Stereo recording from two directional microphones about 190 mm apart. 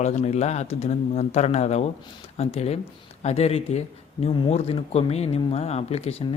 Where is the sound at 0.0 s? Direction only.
35° left (ahead or behind).